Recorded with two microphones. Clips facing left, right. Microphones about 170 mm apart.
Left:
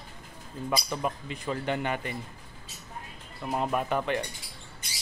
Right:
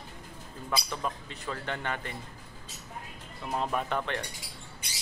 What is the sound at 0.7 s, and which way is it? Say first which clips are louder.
Speech: left 3 dB; 15° left (ahead or behind).